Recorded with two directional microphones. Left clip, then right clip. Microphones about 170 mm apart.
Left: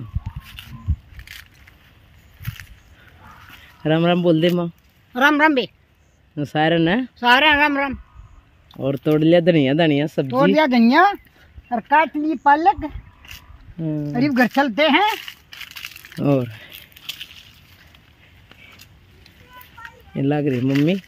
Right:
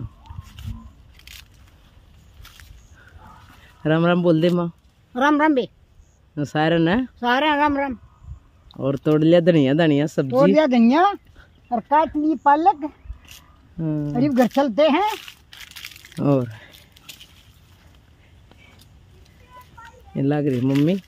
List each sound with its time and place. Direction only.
3.5 s a man's voice: 5° left (ahead or behind)
12.4 s speech: 15° left (ahead or behind)
13.7 s speech: 5° right (ahead or behind)
15.2 s crumpling: 50° left (ahead or behind)
16.2 s crumpling: centre (ahead or behind)
18.5 s vehicle: 5° left (ahead or behind)
20.2 s speech: 5° left (ahead or behind)
20.5 s speech: 45° left (ahead or behind)